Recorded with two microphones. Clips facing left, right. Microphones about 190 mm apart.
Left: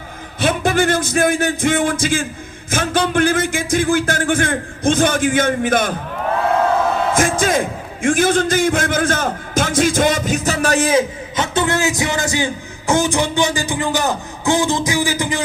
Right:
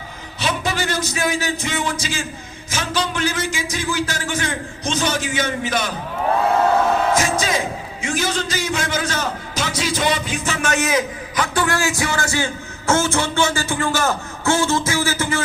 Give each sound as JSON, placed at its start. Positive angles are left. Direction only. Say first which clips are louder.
{"t": 0.3, "sound": "a man's voice", "louder": "left 7 dB", "side_deg": 50}
{"t": 7.1, "sound": "a man's voice", "louder": "left 3 dB", "side_deg": 50}